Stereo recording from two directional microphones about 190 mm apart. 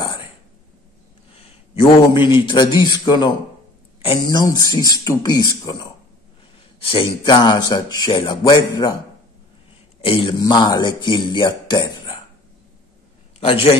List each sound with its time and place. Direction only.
1.4 s speech: 25° left (ahead or behind)
10.0 s speech: 30° left (ahead or behind)
13.4 s a man's voice: 30° left (ahead or behind)